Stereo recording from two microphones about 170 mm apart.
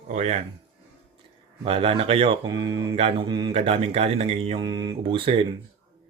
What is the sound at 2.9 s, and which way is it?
Speech, 35° right (ahead or behind).